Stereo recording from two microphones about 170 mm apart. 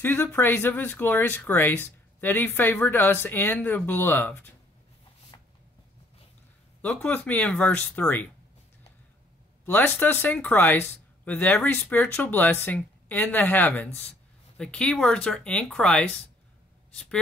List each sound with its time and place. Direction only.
0.0 s speech: 15° left (ahead or behind)
5.3 s a sound: 25° left (ahead or behind)
6.8 s speech: 5° left (ahead or behind)
9.7 s speech: 10° left (ahead or behind)